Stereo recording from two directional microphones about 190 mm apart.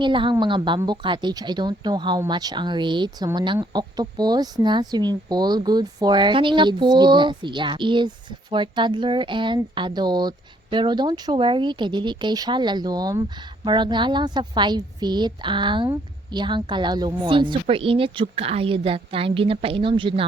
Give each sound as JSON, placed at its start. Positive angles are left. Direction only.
{"t": 0.0, "sound": "speech", "side_deg": -25}